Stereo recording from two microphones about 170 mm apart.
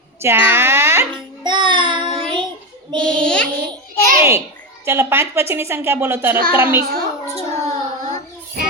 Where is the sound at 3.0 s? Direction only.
5° left (ahead or behind).